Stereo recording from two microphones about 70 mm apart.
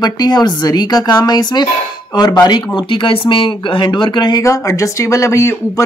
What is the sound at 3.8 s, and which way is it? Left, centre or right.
Speech, left.